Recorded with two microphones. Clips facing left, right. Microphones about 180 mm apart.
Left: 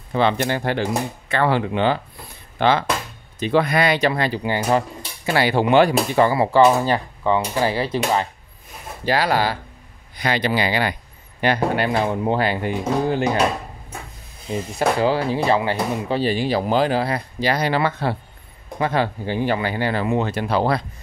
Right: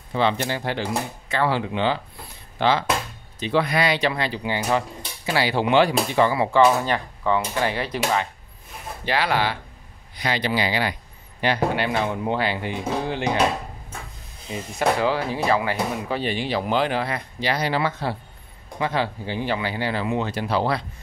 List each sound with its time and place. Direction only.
0.1 s speech: 55° left (ahead or behind); by 8.3 s 30° left (ahead or behind)
9.0 s speech: 40° left (ahead or behind)
10.1 s speech: 55° left (ahead or behind)
14.8 s speech: 35° left (ahead or behind); by 20.8 s 50° left (ahead or behind)